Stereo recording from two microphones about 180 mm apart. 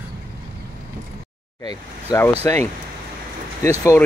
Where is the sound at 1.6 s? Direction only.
20° left (ahead or behind).